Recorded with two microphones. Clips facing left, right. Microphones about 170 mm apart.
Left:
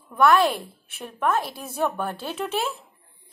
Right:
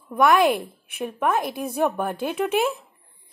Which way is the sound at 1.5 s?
10° right (ahead or behind).